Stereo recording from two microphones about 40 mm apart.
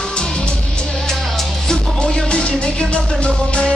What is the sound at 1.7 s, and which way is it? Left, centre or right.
Music, centre.